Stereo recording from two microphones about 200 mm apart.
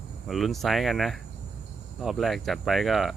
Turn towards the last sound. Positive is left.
turn(degrees=0)  # may be behind; listen again after turning